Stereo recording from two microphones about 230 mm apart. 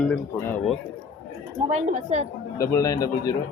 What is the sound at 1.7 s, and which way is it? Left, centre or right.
Speech, right.